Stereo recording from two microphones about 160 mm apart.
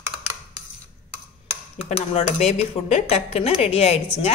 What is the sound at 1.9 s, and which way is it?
A woman's voice, 45° left (ahead or behind).